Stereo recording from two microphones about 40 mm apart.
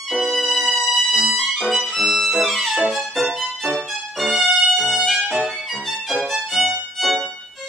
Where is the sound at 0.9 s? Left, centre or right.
Centre.